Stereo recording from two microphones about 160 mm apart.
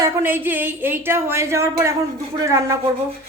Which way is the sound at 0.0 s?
15° right (ahead or behind).